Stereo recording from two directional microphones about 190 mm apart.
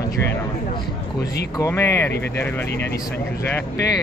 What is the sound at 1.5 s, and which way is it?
Speech, 15° left (ahead or behind).